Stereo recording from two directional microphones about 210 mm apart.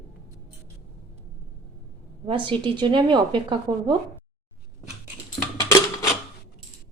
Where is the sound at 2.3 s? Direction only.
25° right (ahead or behind).